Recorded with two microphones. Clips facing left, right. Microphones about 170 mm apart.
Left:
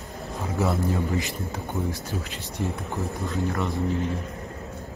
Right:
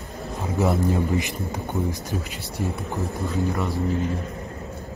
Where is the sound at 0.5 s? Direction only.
20° right (ahead or behind).